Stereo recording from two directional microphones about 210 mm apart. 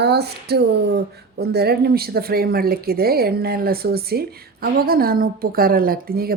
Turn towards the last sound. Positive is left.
turn(degrees=-45)  # may be behind; listen again after turning